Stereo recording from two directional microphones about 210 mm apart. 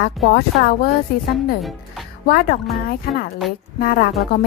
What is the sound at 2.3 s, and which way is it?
Speech, 45° left (ahead or behind).